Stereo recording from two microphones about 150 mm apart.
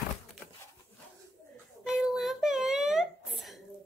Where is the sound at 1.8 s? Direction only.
5° right (ahead or behind).